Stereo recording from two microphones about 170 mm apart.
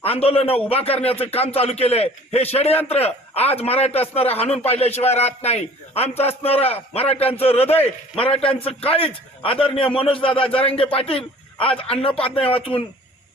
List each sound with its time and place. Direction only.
0.0 s a man's voice: 35° left (ahead or behind)